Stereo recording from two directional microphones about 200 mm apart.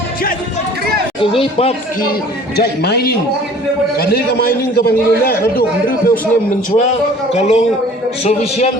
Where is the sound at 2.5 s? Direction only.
50° left (ahead or behind).